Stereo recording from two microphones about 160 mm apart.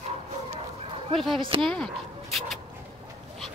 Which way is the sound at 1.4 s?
35° right (ahead or behind).